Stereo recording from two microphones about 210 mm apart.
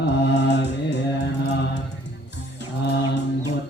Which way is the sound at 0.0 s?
55° left (ahead or behind).